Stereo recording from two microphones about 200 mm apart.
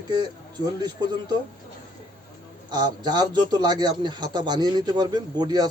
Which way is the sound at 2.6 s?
20° right (ahead or behind).